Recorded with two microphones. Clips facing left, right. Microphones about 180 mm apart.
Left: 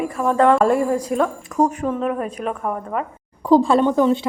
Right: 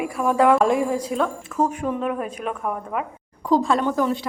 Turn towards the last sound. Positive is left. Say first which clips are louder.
# left 6 dB
turn(degrees=20)  # may be behind; listen again after turning